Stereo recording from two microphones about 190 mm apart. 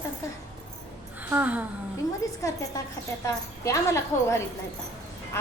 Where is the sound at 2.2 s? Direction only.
15° left (ahead or behind).